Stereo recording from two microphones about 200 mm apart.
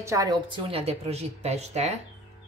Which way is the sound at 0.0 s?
15° right (ahead or behind).